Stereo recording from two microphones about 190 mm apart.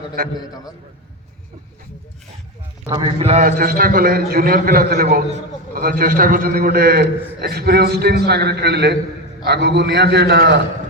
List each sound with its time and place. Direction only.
0.2 s a man's voice: 50° right (ahead or behind)
2.9 s a man's voice: 25° right (ahead or behind)
3.6 s a man's voice: 50° right (ahead or behind)